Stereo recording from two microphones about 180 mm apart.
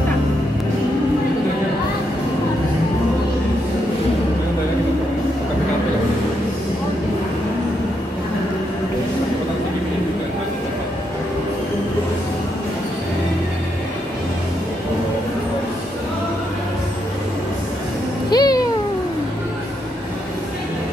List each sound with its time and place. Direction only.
18.3 s cat: 20° left (ahead or behind)